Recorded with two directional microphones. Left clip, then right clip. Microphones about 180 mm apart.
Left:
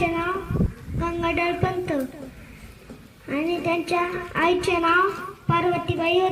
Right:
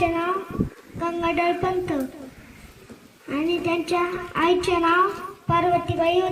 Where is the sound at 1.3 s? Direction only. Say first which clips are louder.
Right 3 dB; 15° left (ahead or behind).